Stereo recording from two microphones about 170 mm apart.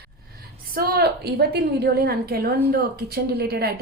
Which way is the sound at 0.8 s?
70° right (ahead or behind).